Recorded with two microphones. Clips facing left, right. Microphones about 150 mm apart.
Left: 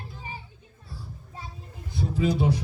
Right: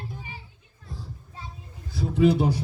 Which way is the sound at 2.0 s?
60° right (ahead or behind).